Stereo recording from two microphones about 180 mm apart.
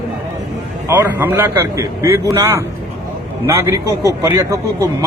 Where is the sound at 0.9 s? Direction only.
10° right (ahead or behind).